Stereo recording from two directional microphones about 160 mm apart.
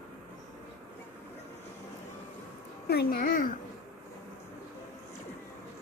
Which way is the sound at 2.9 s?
90° left.